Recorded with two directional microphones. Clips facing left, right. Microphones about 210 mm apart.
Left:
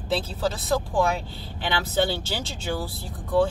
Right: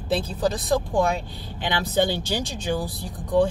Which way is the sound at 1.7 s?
15° right (ahead or behind).